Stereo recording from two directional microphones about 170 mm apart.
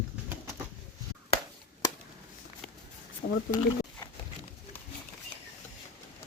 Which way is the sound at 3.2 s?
70° left (ahead or behind).